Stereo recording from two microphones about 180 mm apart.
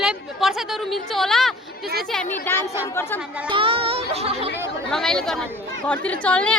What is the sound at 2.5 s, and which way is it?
Speech, 10° left (ahead or behind).